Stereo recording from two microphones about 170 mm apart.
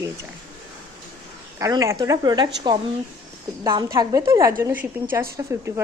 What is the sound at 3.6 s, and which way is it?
A woman's voice, 20° right (ahead or behind).